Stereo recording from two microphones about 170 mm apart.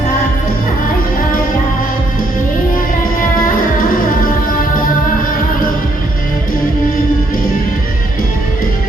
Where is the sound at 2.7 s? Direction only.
55° left (ahead or behind).